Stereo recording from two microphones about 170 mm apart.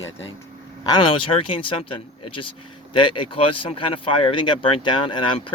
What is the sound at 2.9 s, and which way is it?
Speech, 30° left (ahead or behind).